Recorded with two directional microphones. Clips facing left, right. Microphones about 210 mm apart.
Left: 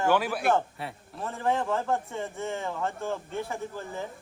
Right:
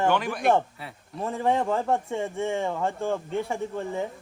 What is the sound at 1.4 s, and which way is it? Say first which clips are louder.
Speech: right 3 dB; 15° right (ahead or behind).